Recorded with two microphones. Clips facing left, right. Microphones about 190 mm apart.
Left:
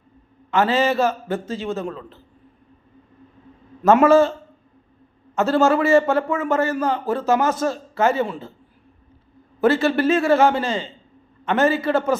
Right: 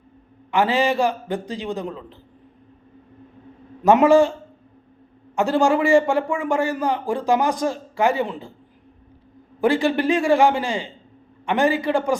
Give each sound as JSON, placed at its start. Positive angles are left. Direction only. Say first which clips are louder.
{"t": 0.5, "sound": "a man's voice", "louder": "left 1 dB", "side_deg": -15}
{"t": 3.8, "sound": "a man's voice", "louder": "even", "side_deg": -15}
{"t": 9.6, "sound": "a man's voice", "louder": "left 1 dB", "side_deg": -15}